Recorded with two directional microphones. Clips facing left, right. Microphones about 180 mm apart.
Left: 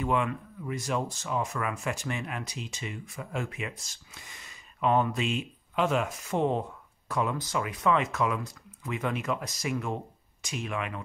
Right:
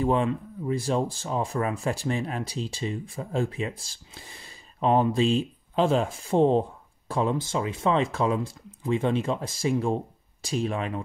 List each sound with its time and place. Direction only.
0.0 s speech: 30° right (ahead or behind)